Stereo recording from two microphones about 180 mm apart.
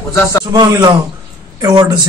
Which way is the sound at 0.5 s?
25° right (ahead or behind).